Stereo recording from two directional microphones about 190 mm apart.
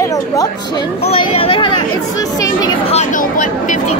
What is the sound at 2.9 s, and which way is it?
Speech, 45° left (ahead or behind).